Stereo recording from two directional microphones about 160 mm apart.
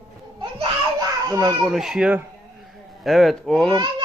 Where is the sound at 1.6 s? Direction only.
Centre (ahead or behind).